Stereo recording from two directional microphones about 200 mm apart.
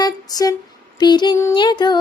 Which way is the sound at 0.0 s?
20° left (ahead or behind).